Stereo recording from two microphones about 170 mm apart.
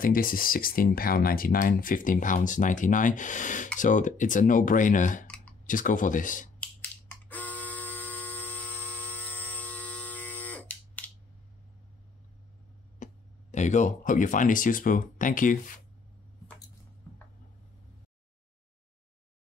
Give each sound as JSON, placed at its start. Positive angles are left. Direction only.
{"t": 0.0, "sound": "speech", "side_deg": 55}
{"t": 5.2, "sound": "clicking", "side_deg": 5}
{"t": 5.7, "sound": "speech", "side_deg": 50}
{"t": 6.6, "sound": "a sound", "side_deg": 10}
{"t": 13.0, "sound": "speech", "side_deg": 45}